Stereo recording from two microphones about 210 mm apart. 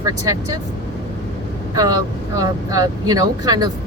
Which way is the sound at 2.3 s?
15° right (ahead or behind).